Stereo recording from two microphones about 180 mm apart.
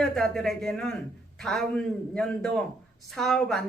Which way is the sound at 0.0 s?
Centre (ahead or behind).